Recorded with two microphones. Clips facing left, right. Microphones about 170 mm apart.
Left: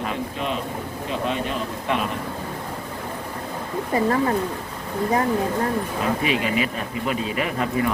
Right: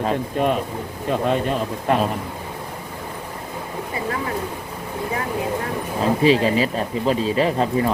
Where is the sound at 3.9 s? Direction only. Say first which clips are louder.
Left 8 dB; 40° left (ahead or behind).